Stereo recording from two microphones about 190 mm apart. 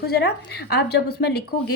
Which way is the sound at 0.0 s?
55° left (ahead or behind).